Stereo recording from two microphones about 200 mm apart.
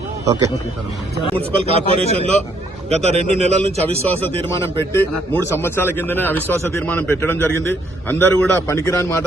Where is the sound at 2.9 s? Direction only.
35° right (ahead or behind).